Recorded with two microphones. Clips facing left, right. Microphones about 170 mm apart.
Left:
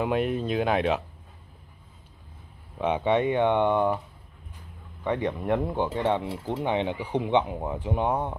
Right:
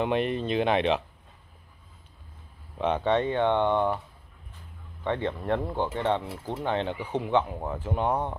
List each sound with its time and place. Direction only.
0.0 s speech: centre (ahead or behind)
2.8 s speech: 10° left (ahead or behind)
5.0 s speech: 15° left (ahead or behind)
6.2 s speech: 25° left (ahead or behind); by 8.4 s 10° left (ahead or behind)